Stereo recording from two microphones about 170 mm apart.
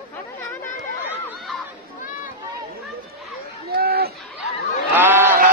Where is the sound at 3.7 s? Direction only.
65° right (ahead or behind).